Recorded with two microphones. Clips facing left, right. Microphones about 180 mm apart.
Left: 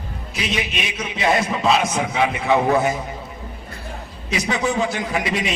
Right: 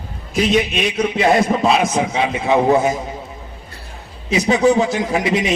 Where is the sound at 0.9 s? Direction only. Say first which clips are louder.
Right 5 dB; 55° right (ahead or behind).